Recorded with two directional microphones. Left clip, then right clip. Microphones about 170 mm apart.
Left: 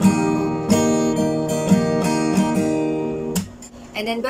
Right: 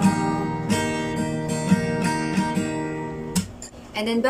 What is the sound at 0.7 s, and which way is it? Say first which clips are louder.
Music: left 7 dB; 20° left (ahead or behind).